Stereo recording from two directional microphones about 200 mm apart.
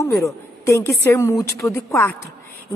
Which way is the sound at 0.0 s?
15° left (ahead or behind).